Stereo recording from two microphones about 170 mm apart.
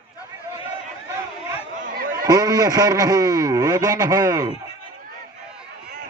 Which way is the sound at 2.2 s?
20° right (ahead or behind).